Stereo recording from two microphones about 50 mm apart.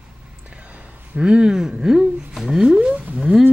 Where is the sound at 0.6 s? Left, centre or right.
Right; by 2.8 s centre.